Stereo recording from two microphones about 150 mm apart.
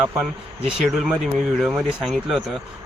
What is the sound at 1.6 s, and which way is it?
Speech, 5° right (ahead or behind).